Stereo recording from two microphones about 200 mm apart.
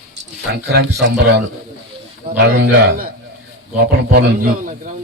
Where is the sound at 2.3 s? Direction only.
55° right (ahead or behind).